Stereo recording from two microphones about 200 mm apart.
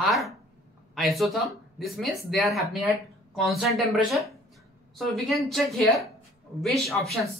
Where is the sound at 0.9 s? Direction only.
Centre (ahead or behind).